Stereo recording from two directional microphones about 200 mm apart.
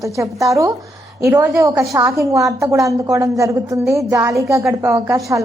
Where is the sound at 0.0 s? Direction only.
15° right (ahead or behind).